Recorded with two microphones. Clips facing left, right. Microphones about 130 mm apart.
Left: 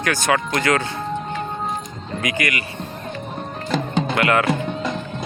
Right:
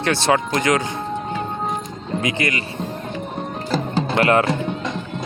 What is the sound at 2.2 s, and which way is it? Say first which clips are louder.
Speech: right 1 dB; 25° right (ahead or behind).